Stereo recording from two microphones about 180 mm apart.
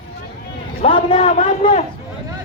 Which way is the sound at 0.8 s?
30° left (ahead or behind).